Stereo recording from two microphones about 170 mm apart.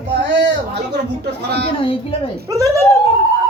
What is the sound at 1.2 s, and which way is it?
Speech, 75° right (ahead or behind).